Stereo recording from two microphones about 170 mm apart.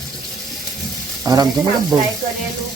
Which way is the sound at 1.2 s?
20° right (ahead or behind).